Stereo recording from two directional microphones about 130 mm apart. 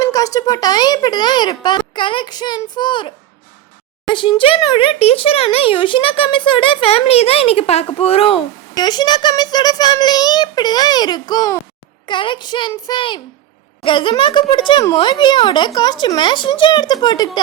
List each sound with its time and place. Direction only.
0.0 s a child's voice: 30° left (ahead or behind)
4.1 s a child's voice: 40° left (ahead or behind)
8.7 s a child's voice: 35° left (ahead or behind)